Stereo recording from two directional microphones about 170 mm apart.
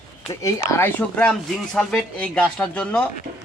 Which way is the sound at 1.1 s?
5° left (ahead or behind).